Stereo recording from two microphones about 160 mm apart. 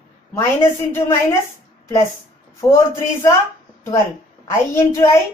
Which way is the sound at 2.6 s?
15° left (ahead or behind).